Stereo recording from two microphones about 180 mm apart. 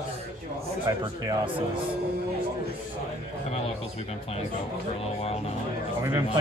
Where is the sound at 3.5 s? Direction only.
35° left (ahead or behind).